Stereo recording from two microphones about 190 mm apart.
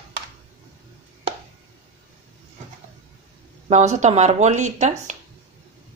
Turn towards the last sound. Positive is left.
turn(degrees=-40)  # may be behind; listen again after turning